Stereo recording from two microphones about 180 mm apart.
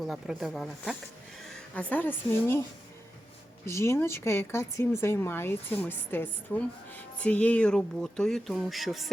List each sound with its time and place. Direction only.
0.0 s speech: centre (ahead or behind)
3.7 s speech: 15° left (ahead or behind); by 9.0 s centre (ahead or behind)